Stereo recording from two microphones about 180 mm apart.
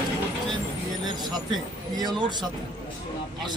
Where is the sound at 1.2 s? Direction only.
25° right (ahead or behind).